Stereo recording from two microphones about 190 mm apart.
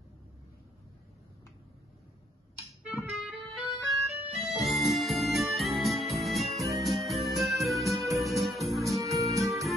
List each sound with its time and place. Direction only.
3.0 s music: centre (ahead or behind)
4.2 s music: 35° right (ahead or behind)
4.6 s music: centre (ahead or behind)